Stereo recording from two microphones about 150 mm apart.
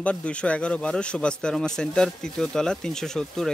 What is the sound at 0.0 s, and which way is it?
Speech, 10° left (ahead or behind).